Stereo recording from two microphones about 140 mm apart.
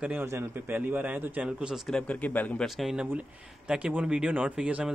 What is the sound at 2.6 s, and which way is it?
A man's voice, centre (ahead or behind).